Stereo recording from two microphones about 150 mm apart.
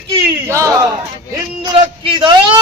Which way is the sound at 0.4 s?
20° right (ahead or behind).